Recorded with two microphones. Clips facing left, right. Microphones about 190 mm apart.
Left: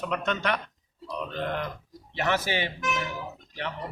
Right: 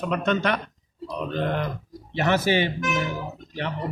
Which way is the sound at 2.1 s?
30° right (ahead or behind).